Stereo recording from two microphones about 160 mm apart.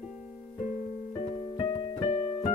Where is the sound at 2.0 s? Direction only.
35° left (ahead or behind).